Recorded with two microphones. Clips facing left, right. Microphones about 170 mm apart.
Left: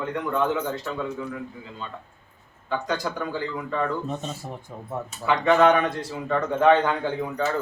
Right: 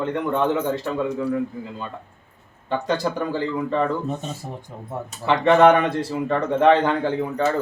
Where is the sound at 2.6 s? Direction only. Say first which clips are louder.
Right 4 dB; 30° right (ahead or behind).